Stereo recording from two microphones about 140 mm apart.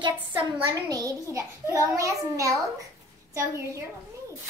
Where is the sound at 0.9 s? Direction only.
20° right (ahead or behind).